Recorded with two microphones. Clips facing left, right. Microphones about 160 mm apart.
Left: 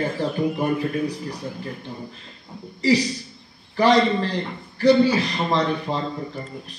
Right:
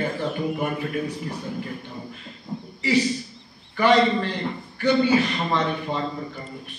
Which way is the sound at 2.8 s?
35° left (ahead or behind).